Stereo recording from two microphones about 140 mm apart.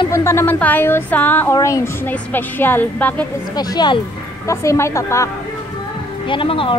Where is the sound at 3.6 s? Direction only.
30° left (ahead or behind).